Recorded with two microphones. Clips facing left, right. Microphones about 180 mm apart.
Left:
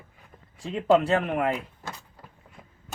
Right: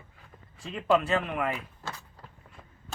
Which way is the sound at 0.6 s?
15° left (ahead or behind).